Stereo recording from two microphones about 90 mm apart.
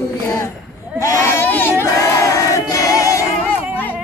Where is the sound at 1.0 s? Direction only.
35° left (ahead or behind).